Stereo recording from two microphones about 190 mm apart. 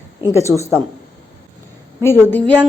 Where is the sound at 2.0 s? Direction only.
10° left (ahead or behind).